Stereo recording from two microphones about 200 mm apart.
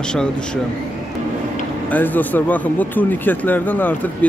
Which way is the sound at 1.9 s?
10° left (ahead or behind).